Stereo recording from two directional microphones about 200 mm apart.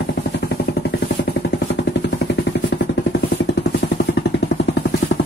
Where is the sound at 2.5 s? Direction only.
55° left (ahead or behind).